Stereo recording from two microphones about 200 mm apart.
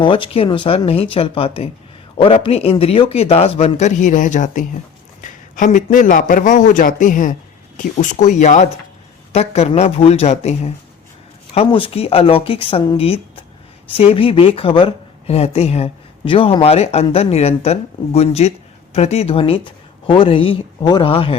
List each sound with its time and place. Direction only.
0.0 s a man's voice: 25° left (ahead or behind)